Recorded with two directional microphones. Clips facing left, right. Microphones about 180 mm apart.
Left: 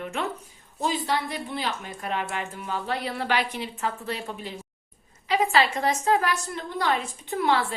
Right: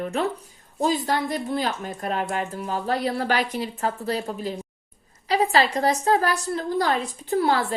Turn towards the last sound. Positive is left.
turn(degrees=-40)  # may be behind; listen again after turning